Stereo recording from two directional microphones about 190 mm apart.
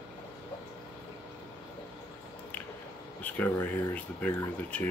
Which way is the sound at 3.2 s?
10° left (ahead or behind).